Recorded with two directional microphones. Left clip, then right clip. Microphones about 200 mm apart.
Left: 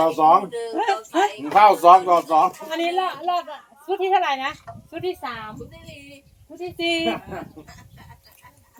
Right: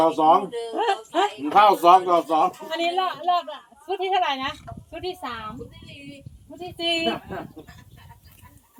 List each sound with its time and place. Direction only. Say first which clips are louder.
0.0 s a man's voice: left 1 dB; 10° right (ahead or behind)
0.5 s speech: left 1 dB; 20° left (ahead or behind)
1.5 s a man's voice: left 3 dB; 10° right (ahead or behind)
2.6 s a woman's voice: left 1 dB; 15° left (ahead or behind)
6.7 s a woman's voice: left 1 dB; 10° left (ahead or behind)